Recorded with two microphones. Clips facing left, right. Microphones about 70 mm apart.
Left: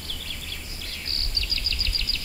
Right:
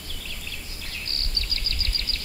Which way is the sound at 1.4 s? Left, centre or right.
Right.